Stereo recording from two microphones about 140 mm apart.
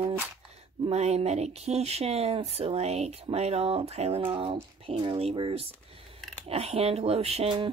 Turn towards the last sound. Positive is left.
turn(degrees=-45)  # may be behind; listen again after turning